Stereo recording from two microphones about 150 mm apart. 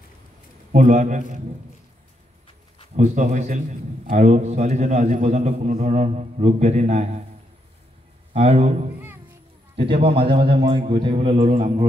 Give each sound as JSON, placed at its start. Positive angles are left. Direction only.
{"t": 0.7, "sound": "a man's voice", "side_deg": -55}
{"t": 3.0, "sound": "a man's voice", "side_deg": -55}
{"t": 8.3, "sound": "a man's voice", "side_deg": -40}